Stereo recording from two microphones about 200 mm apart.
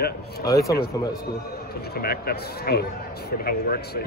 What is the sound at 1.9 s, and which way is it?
A man's voice, 50° left (ahead or behind).